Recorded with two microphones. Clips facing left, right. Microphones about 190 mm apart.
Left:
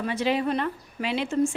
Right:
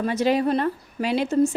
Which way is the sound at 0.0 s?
40° right (ahead or behind).